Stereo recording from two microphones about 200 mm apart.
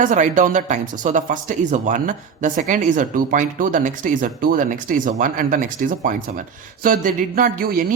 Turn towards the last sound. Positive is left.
turn(degrees=-45)  # may be behind; listen again after turning